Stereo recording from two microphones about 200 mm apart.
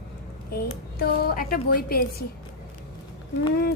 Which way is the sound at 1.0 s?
45° left (ahead or behind).